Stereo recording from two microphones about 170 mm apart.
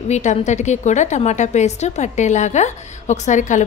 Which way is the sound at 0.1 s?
45° left (ahead or behind).